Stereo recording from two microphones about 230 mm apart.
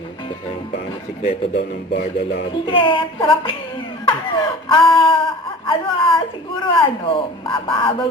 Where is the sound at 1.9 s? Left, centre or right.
Left.